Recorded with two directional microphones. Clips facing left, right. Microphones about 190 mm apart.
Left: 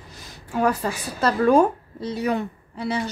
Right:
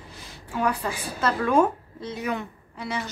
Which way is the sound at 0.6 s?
40° left (ahead or behind).